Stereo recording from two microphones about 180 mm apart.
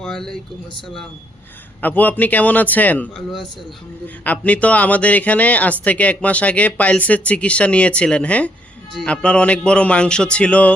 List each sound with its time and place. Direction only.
0.0 s speech: centre (ahead or behind)
1.8 s speech: 10° left (ahead or behind)